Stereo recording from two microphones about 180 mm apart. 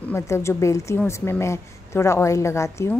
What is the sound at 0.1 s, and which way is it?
A woman's voice, 15° left (ahead or behind).